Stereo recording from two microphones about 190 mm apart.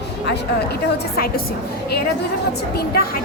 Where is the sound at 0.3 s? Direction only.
60° left (ahead or behind).